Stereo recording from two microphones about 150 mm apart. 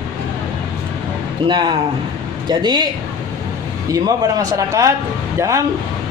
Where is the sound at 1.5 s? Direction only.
30° right (ahead or behind).